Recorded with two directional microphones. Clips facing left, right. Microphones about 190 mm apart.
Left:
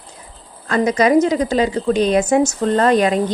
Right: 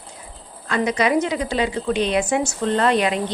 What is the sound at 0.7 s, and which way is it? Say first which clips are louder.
A woman's voice: left 5 dB; 45° left (ahead or behind).